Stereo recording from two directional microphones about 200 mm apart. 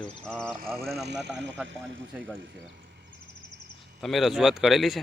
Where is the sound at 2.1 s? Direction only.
10° right (ahead or behind).